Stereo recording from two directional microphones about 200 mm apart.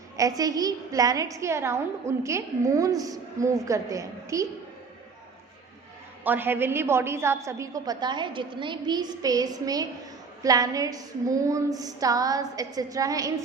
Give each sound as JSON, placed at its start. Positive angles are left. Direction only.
{"t": 0.2, "sound": "a woman's voice", "side_deg": -20}
{"t": 6.2, "sound": "a woman's voice", "side_deg": -10}